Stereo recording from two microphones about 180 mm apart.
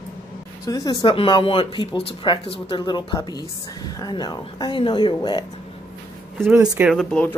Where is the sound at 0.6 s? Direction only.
20° left (ahead or behind).